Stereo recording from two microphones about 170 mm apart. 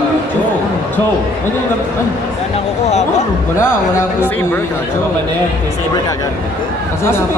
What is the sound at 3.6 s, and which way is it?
A man's voice, 15° left (ahead or behind).